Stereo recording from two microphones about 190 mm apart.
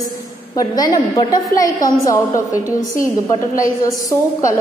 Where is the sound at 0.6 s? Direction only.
20° left (ahead or behind).